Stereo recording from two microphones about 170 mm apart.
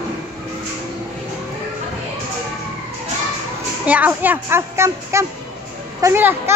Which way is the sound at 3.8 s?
10° right (ahead or behind).